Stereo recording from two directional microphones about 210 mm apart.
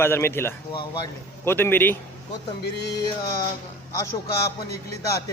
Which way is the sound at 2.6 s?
55° left (ahead or behind).